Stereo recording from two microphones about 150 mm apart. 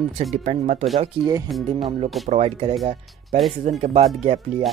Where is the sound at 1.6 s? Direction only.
35° right (ahead or behind).